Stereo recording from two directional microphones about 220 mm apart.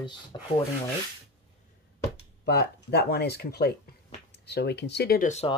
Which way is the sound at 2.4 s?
50° left (ahead or behind).